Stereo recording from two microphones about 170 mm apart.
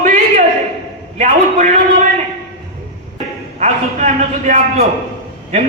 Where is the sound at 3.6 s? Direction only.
45° right (ahead or behind).